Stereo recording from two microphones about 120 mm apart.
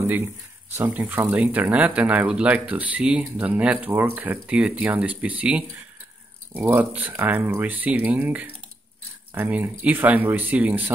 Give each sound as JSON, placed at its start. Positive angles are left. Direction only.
{"t": 0.0, "sound": "speech", "side_deg": -20}